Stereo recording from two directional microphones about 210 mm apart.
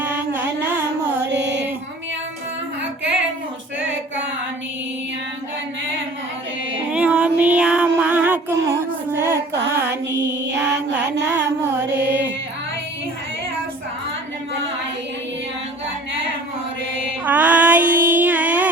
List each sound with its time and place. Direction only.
0.0 s music: 10° right (ahead or behind)
1.2 s music: 55° right (ahead or behind)
6.9 s female singing: 5° right (ahead or behind)
10.4 s mantra: 60° right (ahead or behind)
10.9 s music: 5° right (ahead or behind)
17.2 s a sound: 5° right (ahead or behind)